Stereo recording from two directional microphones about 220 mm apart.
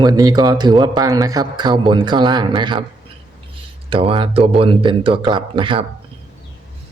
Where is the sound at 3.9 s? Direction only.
25° right (ahead or behind).